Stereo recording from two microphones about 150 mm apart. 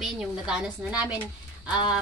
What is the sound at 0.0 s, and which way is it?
A woman's voice, 5° right (ahead or behind).